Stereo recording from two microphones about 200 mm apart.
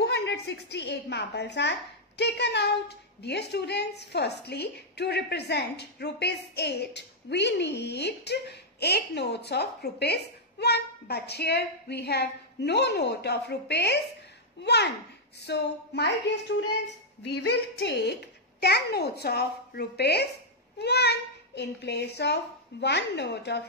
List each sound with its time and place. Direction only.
0.0 s a woman's voice: 60° left (ahead or behind)